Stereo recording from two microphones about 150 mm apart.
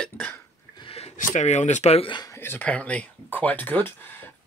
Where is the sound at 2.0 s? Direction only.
30° left (ahead or behind).